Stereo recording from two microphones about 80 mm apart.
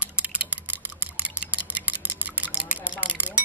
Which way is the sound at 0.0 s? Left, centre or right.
Centre.